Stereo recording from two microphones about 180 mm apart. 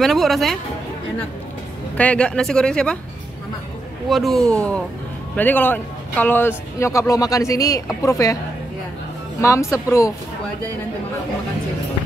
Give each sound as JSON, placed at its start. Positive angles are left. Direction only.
{"t": 0.0, "sound": "speech", "side_deg": 0}
{"t": 2.0, "sound": "speech", "side_deg": 5}
{"t": 4.1, "sound": "speech", "side_deg": 0}
{"t": 9.4, "sound": "speech", "side_deg": 15}